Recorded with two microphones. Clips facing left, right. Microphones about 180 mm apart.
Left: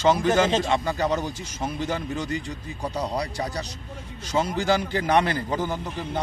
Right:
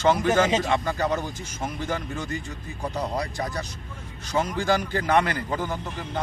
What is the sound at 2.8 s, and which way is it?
Speech, 10° left (ahead or behind).